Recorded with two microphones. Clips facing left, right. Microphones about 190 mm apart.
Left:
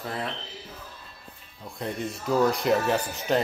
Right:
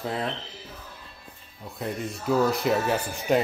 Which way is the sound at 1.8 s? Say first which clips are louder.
Even; centre (ahead or behind).